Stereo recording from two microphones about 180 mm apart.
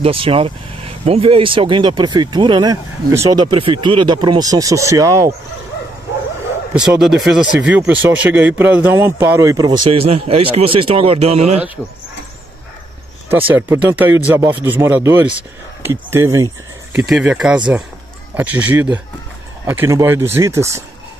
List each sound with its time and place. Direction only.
0.0 s speech: 30° right (ahead or behind)
6.7 s a man's voice: 5° right (ahead or behind); by 11.6 s 35° right (ahead or behind)
13.5 s speech: 10° right (ahead or behind)
17.1 s a man's voice: 5° right (ahead or behind)